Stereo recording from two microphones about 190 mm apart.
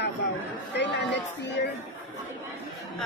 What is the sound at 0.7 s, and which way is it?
A woman's voice, 65° left (ahead or behind).